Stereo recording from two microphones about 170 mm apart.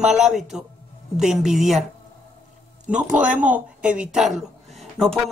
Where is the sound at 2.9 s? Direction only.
5° right (ahead or behind).